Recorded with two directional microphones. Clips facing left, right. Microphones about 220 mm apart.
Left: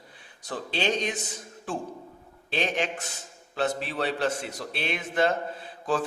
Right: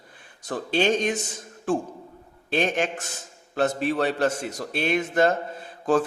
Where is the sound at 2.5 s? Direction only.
45° right (ahead or behind).